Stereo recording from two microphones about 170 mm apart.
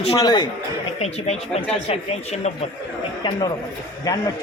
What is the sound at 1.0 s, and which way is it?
Speech, 40° left (ahead or behind).